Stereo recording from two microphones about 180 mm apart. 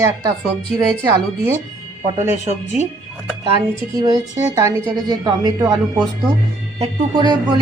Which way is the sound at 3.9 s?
20° right (ahead or behind).